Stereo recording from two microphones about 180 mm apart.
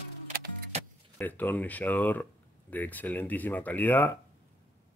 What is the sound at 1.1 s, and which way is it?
Speech, 10° left (ahead or behind).